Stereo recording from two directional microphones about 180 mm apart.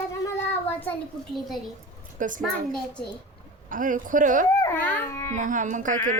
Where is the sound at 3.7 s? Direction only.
50° right (ahead or behind).